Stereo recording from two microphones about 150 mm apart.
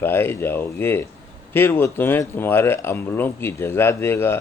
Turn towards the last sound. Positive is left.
turn(degrees=15)  # may be behind; listen again after turning